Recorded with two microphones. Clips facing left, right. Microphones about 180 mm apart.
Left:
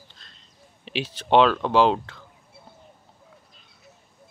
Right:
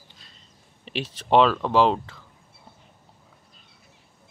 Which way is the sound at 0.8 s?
Centre (ahead or behind).